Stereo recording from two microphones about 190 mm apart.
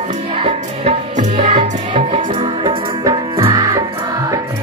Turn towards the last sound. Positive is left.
turn(degrees=-25)  # may be behind; listen again after turning